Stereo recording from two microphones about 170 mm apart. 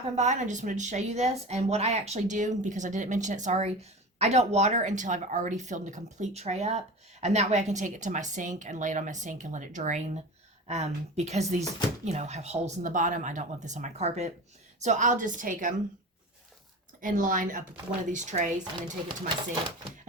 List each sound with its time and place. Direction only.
0.2 s speech: 45° right (ahead or behind)
17.0 s speech: 50° right (ahead or behind)